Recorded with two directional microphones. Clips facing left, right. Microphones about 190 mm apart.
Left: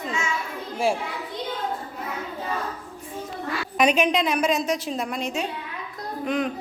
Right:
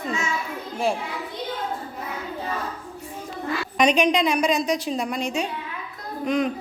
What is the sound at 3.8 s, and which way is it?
A woman's voice, 5° left (ahead or behind).